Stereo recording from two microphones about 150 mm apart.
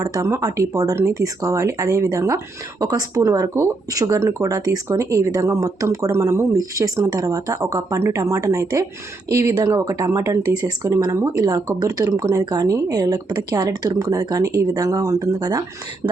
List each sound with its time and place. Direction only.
0.0 s speech: 20° right (ahead or behind)